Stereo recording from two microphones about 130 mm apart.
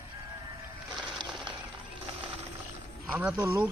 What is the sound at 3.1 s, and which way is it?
Speech, 10° right (ahead or behind).